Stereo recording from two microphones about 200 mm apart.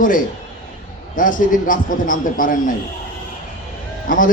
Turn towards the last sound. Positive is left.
turn(degrees=40)  # may be behind; listen again after turning